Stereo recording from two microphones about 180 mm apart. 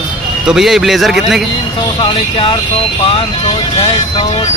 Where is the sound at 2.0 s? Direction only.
25° left (ahead or behind).